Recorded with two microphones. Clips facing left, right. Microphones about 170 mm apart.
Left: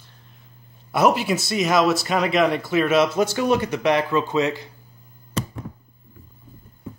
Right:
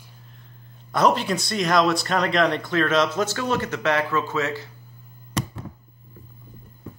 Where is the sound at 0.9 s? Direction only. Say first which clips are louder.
Left 2 dB; 10° left (ahead or behind).